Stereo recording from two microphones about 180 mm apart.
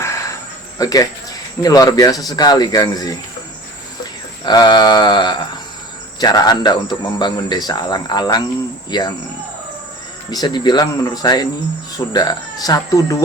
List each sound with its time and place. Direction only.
0.8 s a man's voice: 20° left (ahead or behind)
4.4 s a man's voice: 25° left (ahead or behind)
10.3 s a man's voice: 25° left (ahead or behind)